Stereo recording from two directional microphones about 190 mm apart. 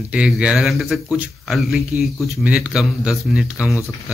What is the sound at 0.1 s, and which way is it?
Speech, 5° right (ahead or behind).